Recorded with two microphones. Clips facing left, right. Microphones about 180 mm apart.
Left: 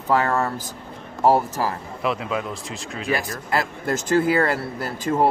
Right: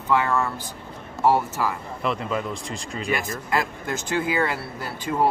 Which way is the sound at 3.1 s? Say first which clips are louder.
Left 2 dB; 35° left (ahead or behind).